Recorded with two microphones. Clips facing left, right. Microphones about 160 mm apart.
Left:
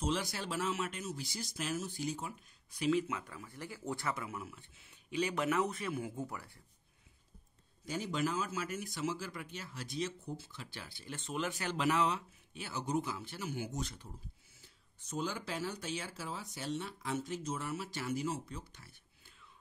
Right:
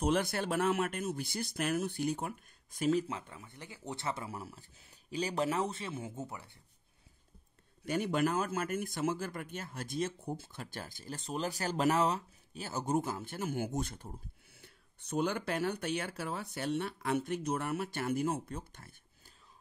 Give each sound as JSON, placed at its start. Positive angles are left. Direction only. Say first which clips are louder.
{"t": 0.0, "sound": "speech", "louder": "right 5 dB", "side_deg": -55}
{"t": 7.8, "sound": "speech", "louder": "right 5 dB", "side_deg": -65}